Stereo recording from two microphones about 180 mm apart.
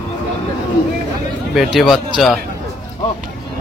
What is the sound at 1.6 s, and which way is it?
Speech, centre (ahead or behind).